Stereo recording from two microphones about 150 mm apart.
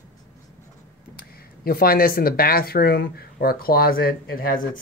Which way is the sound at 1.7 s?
80° left.